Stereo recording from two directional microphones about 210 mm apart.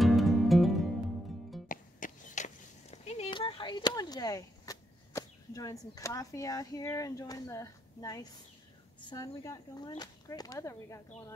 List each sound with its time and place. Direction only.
0.0 s music: centre (ahead or behind)
1.7 s a sound: 40° left (ahead or behind); by 8.3 s 15° left (ahead or behind)
9.1 s whip: 15° left (ahead or behind)